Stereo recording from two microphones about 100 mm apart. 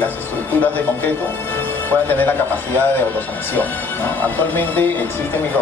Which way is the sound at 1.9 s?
20° left (ahead or behind).